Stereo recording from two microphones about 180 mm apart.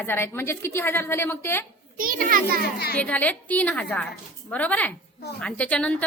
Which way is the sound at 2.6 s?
60° left (ahead or behind).